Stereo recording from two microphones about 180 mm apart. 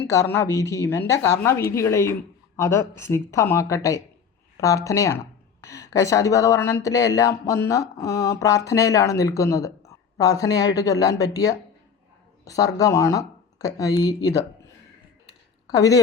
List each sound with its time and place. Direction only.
0.1 s speech: 15° left (ahead or behind)
15.6 s a woman's voice: 20° left (ahead or behind)